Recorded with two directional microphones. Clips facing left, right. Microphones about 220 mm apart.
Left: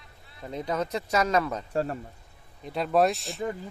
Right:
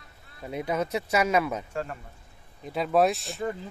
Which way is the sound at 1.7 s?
35° left (ahead or behind).